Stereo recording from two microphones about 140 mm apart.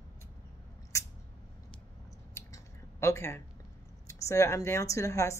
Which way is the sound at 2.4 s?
20° left (ahead or behind).